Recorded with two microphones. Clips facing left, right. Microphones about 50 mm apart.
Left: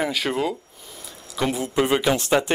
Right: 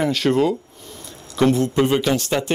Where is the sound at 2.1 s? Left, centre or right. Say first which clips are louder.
Left 1 dB; left.